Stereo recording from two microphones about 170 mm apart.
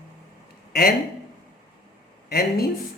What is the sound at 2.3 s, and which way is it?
Speech, 65° left (ahead or behind).